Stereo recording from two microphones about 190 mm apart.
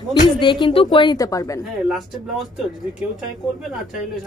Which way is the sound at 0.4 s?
25° left (ahead or behind).